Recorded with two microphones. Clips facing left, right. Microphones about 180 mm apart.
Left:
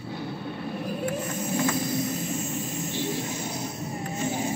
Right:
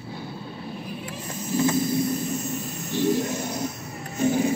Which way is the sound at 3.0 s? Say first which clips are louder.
Right 9 dB; 40° right (ahead or behind).